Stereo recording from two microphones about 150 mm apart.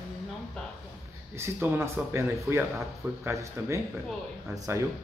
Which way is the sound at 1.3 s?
15° right (ahead or behind).